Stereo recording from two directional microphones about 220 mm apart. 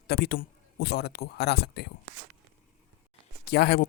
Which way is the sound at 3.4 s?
50° left (ahead or behind).